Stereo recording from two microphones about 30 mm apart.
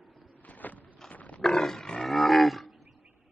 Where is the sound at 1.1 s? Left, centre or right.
Left.